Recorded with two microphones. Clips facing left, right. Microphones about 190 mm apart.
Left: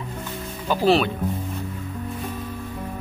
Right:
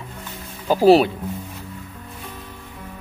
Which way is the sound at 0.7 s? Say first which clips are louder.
Right 6 dB; 40° right (ahead or behind).